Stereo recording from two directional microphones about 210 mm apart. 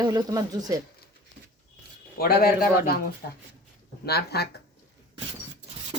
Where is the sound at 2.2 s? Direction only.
45° left (ahead or behind).